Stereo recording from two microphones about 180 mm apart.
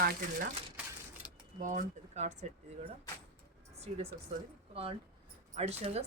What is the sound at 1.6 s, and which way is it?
Speech, 45° right (ahead or behind).